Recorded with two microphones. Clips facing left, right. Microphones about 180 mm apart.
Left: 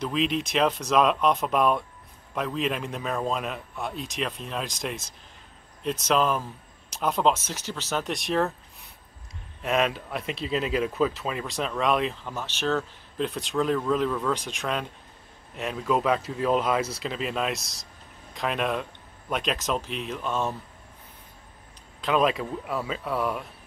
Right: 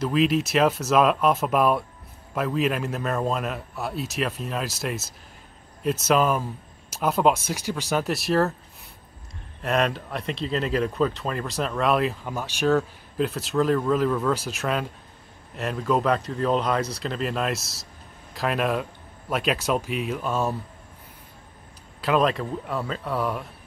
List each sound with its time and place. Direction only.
0.0 s speech: 5° right (ahead or behind)
9.6 s speech: centre (ahead or behind)
22.0 s speech: centre (ahead or behind)